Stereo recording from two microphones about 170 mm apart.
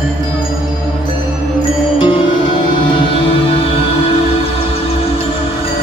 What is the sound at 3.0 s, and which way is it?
Music, 30° left (ahead or behind).